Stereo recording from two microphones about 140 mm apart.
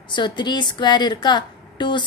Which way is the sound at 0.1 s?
35° left (ahead or behind).